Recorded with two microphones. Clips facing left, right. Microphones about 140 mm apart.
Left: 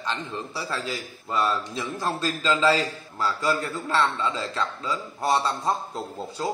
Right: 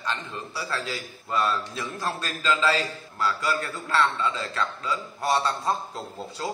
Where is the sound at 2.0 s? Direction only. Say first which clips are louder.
Left 2 dB; 30° left (ahead or behind).